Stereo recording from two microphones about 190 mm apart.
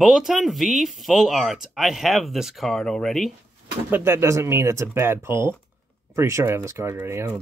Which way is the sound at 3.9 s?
10° right (ahead or behind).